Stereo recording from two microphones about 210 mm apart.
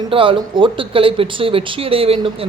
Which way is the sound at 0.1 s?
25° right (ahead or behind).